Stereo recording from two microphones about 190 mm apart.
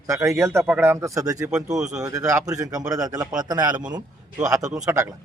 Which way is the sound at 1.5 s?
5° right (ahead or behind).